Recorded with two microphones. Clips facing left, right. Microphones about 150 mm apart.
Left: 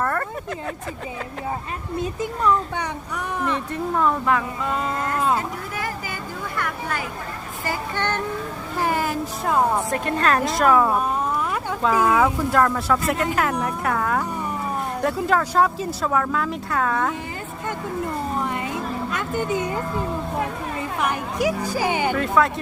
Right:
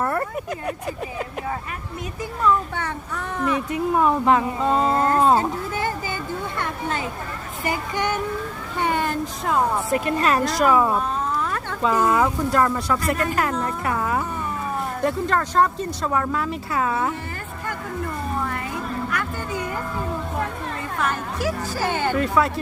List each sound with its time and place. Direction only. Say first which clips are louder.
0.0 s a sound: right 1 dB; 10° right (ahead or behind)
2.4 s speech: right 1 dB; 15° left (ahead or behind)
3.4 s speech: right 4 dB; 10° right (ahead or behind); by 7.0 s 25° right (ahead or behind)
7.6 s music: right 2 dB; 15° right (ahead or behind)
8.8 s a woman's voice: even; 5° left (ahead or behind)
13.5 s speech: left 1 dB; 10° left (ahead or behind)
13.8 s a woman's voice: left 2 dB; 5° right (ahead or behind)
17.7 s a sound: left 2 dB; 20° left (ahead or behind)
21.0 s speech: left 2 dB; 15° left (ahead or behind)
22.2 s a woman's voice: even; centre (ahead or behind)